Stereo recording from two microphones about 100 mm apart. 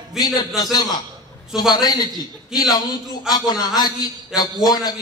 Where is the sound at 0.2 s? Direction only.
45° left (ahead or behind).